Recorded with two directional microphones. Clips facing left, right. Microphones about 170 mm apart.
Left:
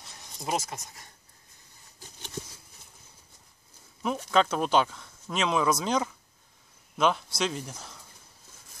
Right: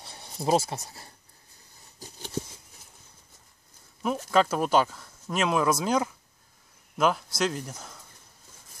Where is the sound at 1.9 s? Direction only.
40° right (ahead or behind).